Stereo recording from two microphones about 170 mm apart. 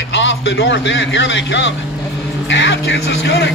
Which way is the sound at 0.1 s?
90° left.